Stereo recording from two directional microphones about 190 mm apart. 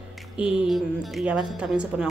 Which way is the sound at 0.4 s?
5° right (ahead or behind).